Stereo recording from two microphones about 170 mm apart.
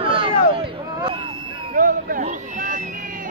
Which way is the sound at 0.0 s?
30° right (ahead or behind).